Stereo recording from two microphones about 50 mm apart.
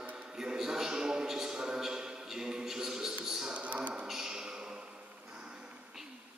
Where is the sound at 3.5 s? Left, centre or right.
Right.